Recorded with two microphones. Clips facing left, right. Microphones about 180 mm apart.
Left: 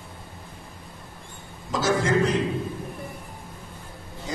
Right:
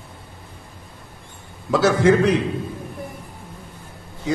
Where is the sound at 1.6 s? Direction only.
65° right (ahead or behind).